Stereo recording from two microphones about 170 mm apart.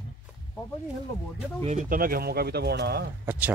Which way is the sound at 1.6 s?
40° right (ahead or behind).